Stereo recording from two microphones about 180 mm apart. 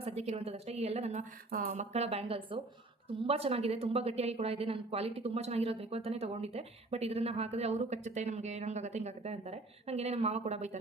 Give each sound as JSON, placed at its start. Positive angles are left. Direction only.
{"t": 0.0, "sound": "speech", "side_deg": -35}
{"t": 1.5, "sound": "speech", "side_deg": -55}